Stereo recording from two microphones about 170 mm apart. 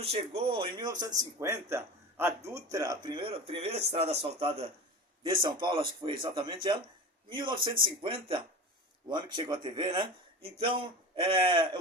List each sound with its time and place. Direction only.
0.0 s speech: 35° right (ahead or behind)